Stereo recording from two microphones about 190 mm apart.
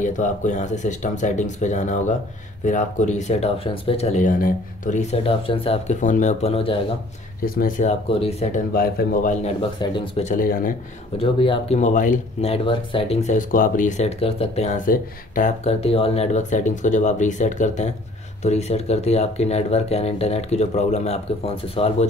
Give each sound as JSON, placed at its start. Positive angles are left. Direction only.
{"t": 0.0, "sound": "speech", "side_deg": 40}
{"t": 7.4, "sound": "speech", "side_deg": 50}
{"t": 8.1, "sound": "speech", "side_deg": 30}
{"t": 9.4, "sound": "speech", "side_deg": 25}
{"t": 10.2, "sound": "speech", "side_deg": 45}
{"t": 11.1, "sound": "speech", "side_deg": 25}